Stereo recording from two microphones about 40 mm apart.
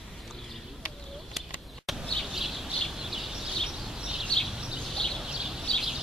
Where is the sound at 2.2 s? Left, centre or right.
Centre.